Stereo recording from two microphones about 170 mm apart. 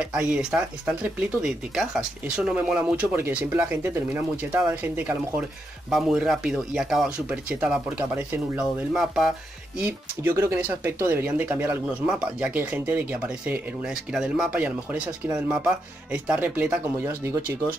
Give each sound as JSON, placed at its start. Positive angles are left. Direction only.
{"t": 0.0, "sound": "speech", "side_deg": -5}